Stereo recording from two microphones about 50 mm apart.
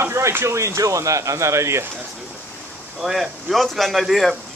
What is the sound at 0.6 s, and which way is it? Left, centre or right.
Speech, right.